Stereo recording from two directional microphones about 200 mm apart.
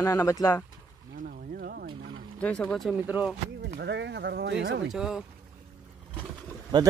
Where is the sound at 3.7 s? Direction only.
60° right (ahead or behind).